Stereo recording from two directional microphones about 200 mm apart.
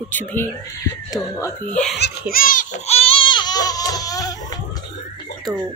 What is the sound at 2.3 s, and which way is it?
Baby cry, 45° left (ahead or behind).